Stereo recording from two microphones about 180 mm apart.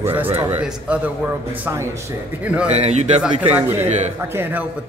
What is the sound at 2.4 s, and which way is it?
Speech, 5° right (ahead or behind).